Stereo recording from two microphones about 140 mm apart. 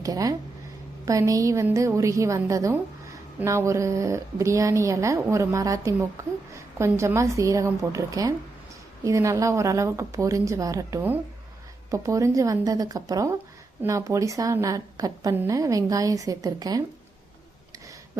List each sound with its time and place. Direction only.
0.0 s a woman's voice: 25° right (ahead or behind)